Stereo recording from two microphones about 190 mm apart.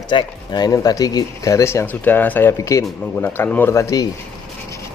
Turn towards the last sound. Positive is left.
turn(degrees=15)  # may be behind; listen again after turning